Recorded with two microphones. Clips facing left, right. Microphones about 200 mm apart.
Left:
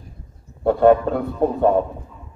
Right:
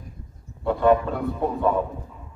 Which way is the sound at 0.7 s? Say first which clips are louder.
Left 5 dB; 50° left (ahead or behind).